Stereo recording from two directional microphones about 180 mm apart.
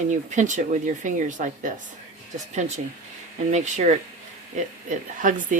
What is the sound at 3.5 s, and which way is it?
Speech, 40° right (ahead or behind).